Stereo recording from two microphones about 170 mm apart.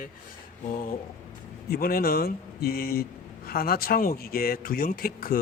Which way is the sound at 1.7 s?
60° left (ahead or behind).